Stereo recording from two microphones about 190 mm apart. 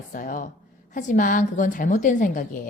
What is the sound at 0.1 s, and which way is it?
Speech, 45° left (ahead or behind).